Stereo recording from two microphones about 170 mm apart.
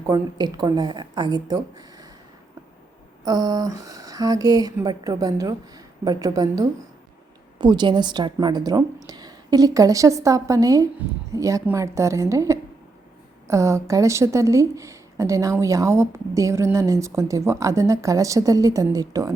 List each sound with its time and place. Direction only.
0.1 s a woman's voice: 25° right (ahead or behind)
3.2 s a woman's voice: 20° right (ahead or behind)